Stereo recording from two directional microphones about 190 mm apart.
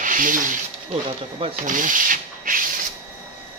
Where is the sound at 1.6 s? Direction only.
45° right (ahead or behind).